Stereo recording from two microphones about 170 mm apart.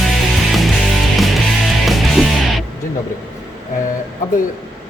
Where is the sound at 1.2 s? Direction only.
Centre (ahead or behind).